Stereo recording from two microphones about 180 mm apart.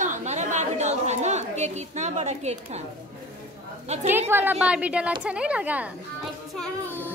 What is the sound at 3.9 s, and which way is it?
Speech, 40° right (ahead or behind).